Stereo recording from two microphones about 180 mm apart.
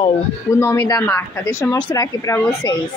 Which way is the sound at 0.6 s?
15° left (ahead or behind).